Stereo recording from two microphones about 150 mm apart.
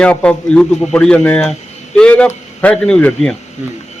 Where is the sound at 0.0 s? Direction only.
5° left (ahead or behind).